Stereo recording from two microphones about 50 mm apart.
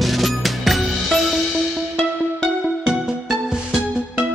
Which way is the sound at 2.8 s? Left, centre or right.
Centre.